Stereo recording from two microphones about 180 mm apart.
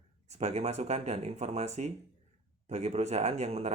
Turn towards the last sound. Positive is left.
turn(degrees=-40)  # may be behind; listen again after turning